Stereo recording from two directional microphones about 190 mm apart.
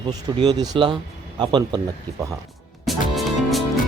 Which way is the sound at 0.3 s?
20° right (ahead or behind).